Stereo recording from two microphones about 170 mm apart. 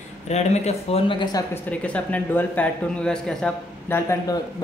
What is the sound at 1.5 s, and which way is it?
Speech, 10° left (ahead or behind).